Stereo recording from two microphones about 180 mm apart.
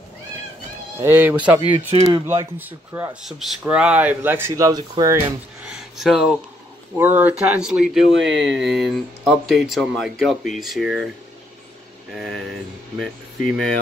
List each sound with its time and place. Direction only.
1.0 s speech: 10° right (ahead or behind)
1.9 s speech: 30° right (ahead or behind)
2.2 s speech: 15° right (ahead or behind)
5.6 s a sound: 5° right (ahead or behind)
7.0 s speech: 10° right (ahead or behind)
8.1 s speech: 90° right
8.7 s speech: centre (ahead or behind)